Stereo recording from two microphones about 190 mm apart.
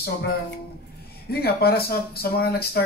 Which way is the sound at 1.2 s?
55° left (ahead or behind).